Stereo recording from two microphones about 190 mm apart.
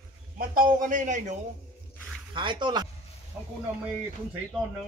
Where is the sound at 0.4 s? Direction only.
45° right (ahead or behind).